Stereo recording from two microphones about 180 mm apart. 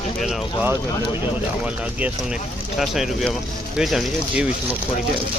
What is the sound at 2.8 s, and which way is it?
Speech, centre (ahead or behind).